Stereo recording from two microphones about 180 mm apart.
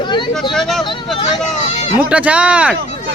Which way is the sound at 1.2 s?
40° left (ahead or behind).